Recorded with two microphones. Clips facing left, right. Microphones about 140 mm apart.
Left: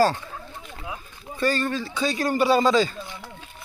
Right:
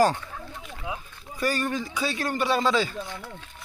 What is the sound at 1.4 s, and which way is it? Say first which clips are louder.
Speech: left 3 dB; 10° right (ahead or behind).